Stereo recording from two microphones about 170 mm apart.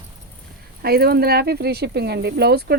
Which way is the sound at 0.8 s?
65° right (ahead or behind).